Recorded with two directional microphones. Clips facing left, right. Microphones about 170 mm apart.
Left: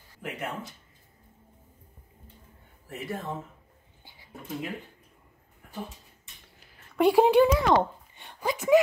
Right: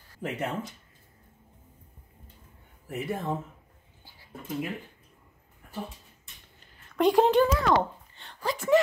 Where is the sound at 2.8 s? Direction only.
15° right (ahead or behind).